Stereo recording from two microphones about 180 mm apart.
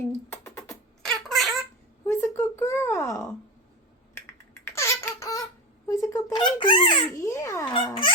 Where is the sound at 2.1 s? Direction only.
15° left (ahead or behind).